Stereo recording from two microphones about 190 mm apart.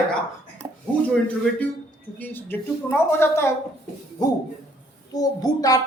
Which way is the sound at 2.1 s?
10° left (ahead or behind).